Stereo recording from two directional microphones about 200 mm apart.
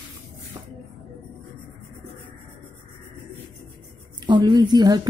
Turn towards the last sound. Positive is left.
turn(degrees=-20)  # may be behind; listen again after turning